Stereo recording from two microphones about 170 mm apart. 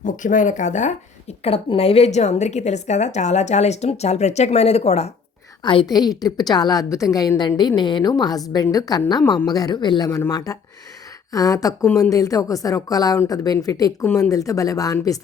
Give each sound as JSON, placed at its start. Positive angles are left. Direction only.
{"t": 0.0, "sound": "a woman's voice", "side_deg": 50}
{"t": 5.6, "sound": "a woman's voice", "side_deg": 25}